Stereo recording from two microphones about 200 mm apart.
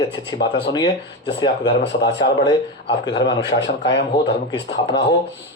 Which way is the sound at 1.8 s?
60° left (ahead or behind).